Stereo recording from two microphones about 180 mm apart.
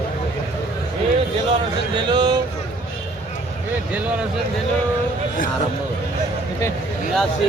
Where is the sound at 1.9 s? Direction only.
25° right (ahead or behind).